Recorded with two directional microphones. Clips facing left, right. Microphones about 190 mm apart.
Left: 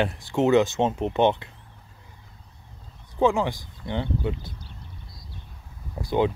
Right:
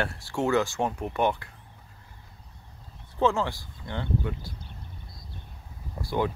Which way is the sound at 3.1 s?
15° left (ahead or behind).